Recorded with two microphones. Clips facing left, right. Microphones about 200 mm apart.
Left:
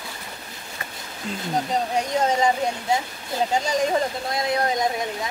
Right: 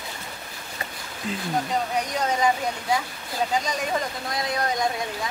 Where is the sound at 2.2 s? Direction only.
25° left (ahead or behind).